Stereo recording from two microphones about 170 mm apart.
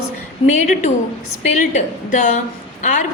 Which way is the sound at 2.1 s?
50° left (ahead or behind).